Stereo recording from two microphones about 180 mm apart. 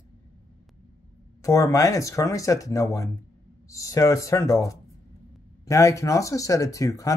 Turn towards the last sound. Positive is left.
turn(degrees=20)  # may be behind; listen again after turning